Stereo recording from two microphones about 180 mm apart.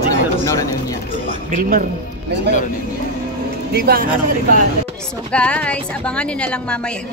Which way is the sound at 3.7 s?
55° right (ahead or behind).